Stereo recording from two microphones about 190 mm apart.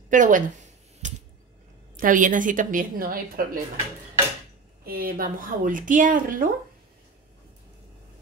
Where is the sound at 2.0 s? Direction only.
45° right (ahead or behind).